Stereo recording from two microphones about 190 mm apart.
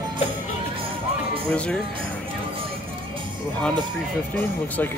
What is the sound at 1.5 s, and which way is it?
Speech, 5° left (ahead or behind).